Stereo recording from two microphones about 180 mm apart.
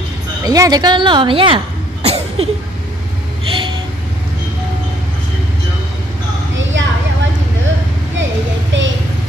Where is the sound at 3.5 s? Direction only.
30° right (ahead or behind).